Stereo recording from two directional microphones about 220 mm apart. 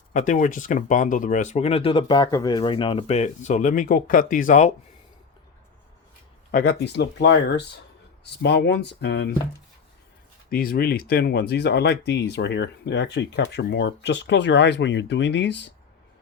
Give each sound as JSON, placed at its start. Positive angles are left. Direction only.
{"t": 0.1, "sound": "speech", "side_deg": 35}
{"t": 6.5, "sound": "speech", "side_deg": 45}
{"t": 10.5, "sound": "speech", "side_deg": 40}